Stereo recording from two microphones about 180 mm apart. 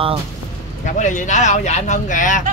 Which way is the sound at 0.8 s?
45° left (ahead or behind).